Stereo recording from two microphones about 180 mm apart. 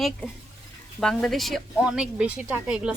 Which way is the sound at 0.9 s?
Centre (ahead or behind).